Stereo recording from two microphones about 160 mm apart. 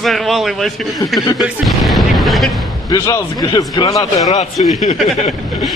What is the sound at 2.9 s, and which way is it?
Speech, 20° left (ahead or behind).